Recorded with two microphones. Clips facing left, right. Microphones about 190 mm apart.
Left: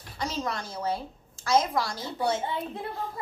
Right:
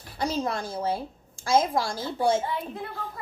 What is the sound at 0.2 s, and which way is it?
Speech, 35° right (ahead or behind).